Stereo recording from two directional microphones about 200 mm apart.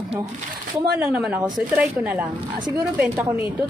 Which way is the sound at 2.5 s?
20° right (ahead or behind).